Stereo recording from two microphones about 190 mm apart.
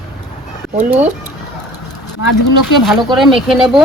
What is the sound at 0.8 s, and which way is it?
Speech, 10° right (ahead or behind).